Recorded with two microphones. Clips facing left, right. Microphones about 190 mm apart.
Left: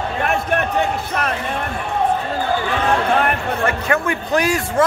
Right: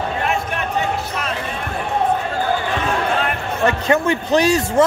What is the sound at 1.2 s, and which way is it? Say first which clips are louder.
Basketball bounce: left 3 dB; 55° left (ahead or behind).